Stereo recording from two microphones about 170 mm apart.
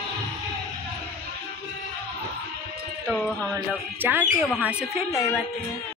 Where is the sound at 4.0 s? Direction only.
10° right (ahead or behind).